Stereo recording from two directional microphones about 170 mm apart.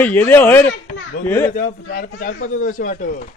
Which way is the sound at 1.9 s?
70° left (ahead or behind).